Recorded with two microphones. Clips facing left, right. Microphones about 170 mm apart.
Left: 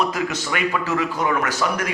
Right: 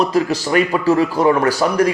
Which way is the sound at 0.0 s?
35° right (ahead or behind).